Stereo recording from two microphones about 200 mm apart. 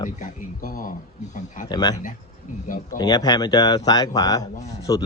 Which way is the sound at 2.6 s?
45° left (ahead or behind).